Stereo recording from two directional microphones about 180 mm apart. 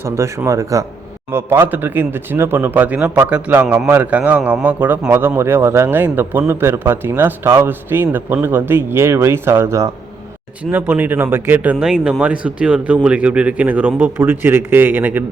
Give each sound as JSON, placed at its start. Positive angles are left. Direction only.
{"t": 0.0, "sound": "speech", "side_deg": -15}